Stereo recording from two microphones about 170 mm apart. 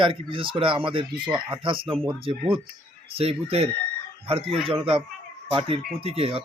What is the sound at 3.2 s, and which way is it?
A man's voice, 35° right (ahead or behind).